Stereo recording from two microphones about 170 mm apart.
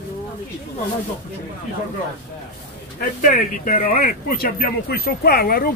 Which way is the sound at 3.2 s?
55° left (ahead or behind).